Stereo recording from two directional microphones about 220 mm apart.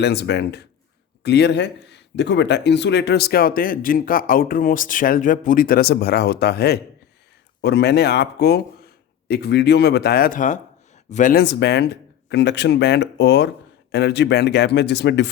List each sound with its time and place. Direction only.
0.0 s speech: 50° left (ahead or behind)